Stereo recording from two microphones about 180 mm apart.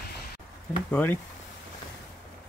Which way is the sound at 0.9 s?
10° left (ahead or behind).